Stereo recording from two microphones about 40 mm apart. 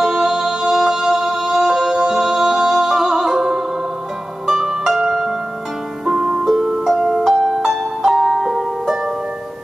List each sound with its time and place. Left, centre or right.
0.0 s music: centre
6.4 s music: centre
6.7 s music: centre